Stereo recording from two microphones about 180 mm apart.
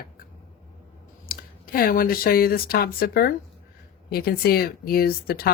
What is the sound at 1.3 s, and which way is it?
Speech, 55° left (ahead or behind).